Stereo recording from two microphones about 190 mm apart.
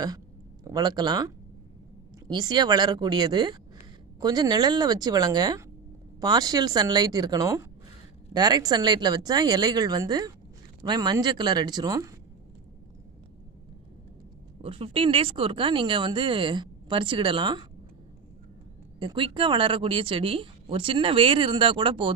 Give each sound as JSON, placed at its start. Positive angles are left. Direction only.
{"t": 0.7, "sound": "a woman's voice", "side_deg": -20}
{"t": 14.6, "sound": "a woman's voice", "side_deg": -30}
{"t": 18.9, "sound": "a woman's voice", "side_deg": -25}